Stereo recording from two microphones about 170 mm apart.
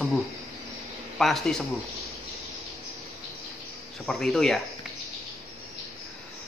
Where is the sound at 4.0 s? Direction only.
5° left (ahead or behind).